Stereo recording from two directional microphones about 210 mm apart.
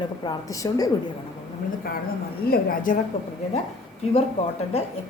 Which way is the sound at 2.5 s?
40° left (ahead or behind).